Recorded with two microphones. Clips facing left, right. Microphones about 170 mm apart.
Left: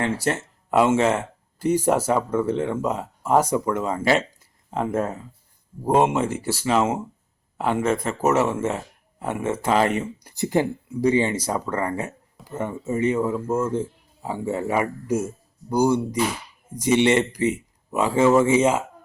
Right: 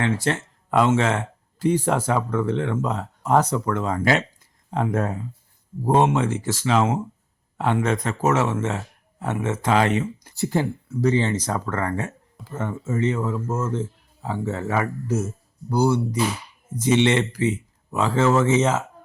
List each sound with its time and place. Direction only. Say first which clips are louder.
0.0 s speech: right 1 dB; 10° left (ahead or behind)